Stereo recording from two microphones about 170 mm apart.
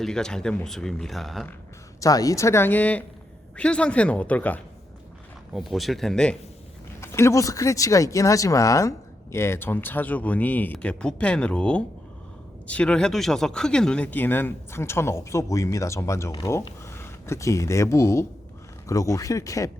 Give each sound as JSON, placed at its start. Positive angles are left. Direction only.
{"t": 0.0, "sound": "speech", "side_deg": 5}
{"t": 2.0, "sound": "speech", "side_deg": 20}
{"t": 7.0, "sound": "speech", "side_deg": 15}